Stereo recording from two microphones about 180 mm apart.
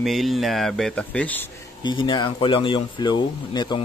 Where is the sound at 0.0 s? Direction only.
Centre (ahead or behind).